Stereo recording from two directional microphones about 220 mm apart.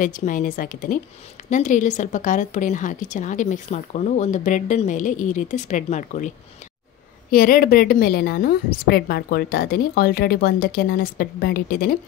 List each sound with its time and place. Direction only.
0.0 s a woman's voice: 35° left (ahead or behind)